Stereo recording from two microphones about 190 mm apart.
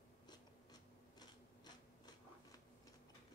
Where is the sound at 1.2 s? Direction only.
20° left (ahead or behind).